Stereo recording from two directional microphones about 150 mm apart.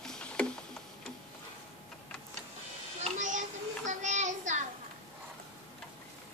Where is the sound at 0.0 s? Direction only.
5° left (ahead or behind).